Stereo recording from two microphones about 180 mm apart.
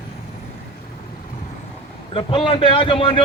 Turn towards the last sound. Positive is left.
turn(degrees=30)  # may be behind; listen again after turning